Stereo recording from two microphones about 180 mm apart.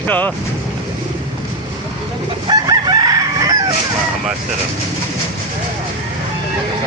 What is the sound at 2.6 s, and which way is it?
Chicken, 20° right (ahead or behind).